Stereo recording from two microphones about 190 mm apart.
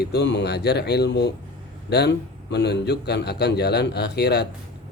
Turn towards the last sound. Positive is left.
turn(degrees=60)  # may be behind; listen again after turning